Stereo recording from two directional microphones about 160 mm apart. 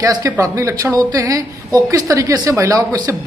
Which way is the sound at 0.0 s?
20° right (ahead or behind).